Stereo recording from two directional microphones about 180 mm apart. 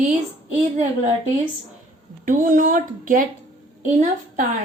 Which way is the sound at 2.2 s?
50° right (ahead or behind).